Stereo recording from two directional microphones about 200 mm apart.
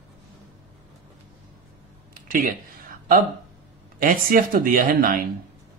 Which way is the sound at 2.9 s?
45° right (ahead or behind).